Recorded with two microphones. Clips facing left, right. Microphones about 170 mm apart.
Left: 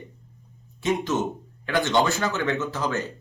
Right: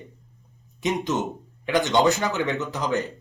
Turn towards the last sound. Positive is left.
turn(degrees=-15)  # may be behind; listen again after turning